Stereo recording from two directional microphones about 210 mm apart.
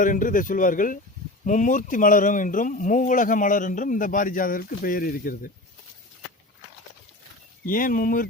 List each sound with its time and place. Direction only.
0.0 s speech: 40° left (ahead or behind)
7.6 s speech: 40° left (ahead or behind)